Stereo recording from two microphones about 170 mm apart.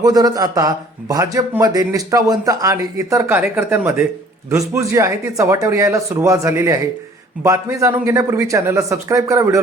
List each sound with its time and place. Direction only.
0.0 s speech: 20° right (ahead or behind)